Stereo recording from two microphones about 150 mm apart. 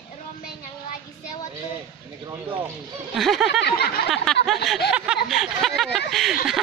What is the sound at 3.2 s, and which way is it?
Speech, centre (ahead or behind).